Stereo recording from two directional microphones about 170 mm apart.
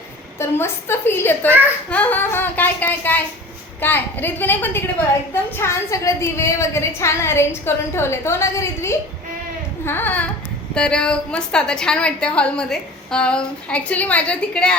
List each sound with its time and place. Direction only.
0.3 s a woman's voice: 15° left (ahead or behind)